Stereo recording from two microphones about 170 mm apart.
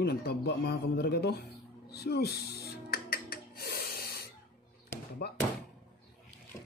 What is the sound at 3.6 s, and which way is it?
Snort, 65° left (ahead or behind).